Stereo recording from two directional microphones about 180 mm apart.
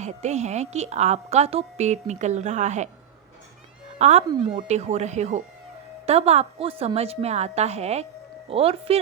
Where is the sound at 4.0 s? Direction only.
40° right (ahead or behind).